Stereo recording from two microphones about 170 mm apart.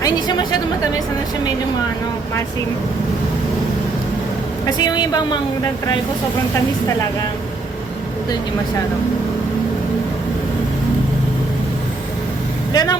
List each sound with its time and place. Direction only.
0.0 s a woman's voice: 25° left (ahead or behind)
4.8 s a woman's voice: 25° left (ahead or behind)
12.7 s a woman's voice: 20° left (ahead or behind)